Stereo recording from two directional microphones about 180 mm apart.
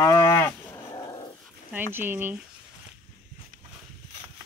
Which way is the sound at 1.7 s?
10° right (ahead or behind).